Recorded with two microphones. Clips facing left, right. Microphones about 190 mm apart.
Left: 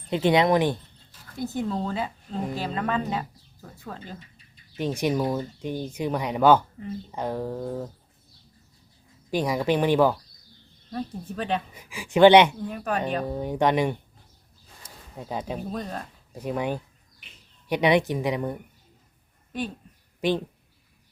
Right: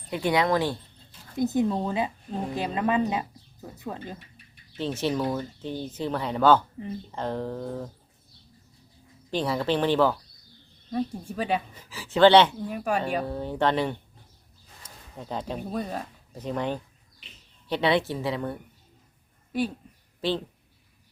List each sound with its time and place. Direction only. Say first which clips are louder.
0.1 s speech: left 4 dB; 25° left (ahead or behind)
1.4 s speech: right 4 dB; 20° right (ahead or behind)
4.8 s speech: left 2 dB; 15° left (ahead or behind)
9.3 s speech: left 2 dB; 10° left (ahead or behind)
10.9 s speech: right 3 dB; 10° right (ahead or behind)
11.7 s speech: left 4 dB; 10° left (ahead or behind)
12.6 s speech: right 1 dB; 10° right (ahead or behind)
13.2 s speech: left 2 dB; 15° left (ahead or behind)
14.8 s a sound: left 1 dB; 10° left (ahead or behind)
15.7 s speech: right 2 dB; 10° right (ahead or behind)
16.3 s speech: left 1 dB; 10° left (ahead or behind)
20.2 s speech: left 3 dB; 15° left (ahead or behind)